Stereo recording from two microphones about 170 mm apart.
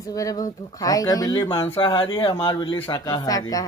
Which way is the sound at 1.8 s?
30° left (ahead or behind).